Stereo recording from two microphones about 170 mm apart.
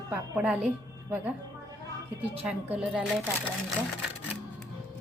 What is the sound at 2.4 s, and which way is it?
Speech, 10° right (ahead or behind).